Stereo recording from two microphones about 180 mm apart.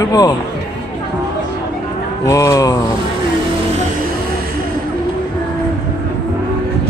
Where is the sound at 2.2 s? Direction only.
15° left (ahead or behind).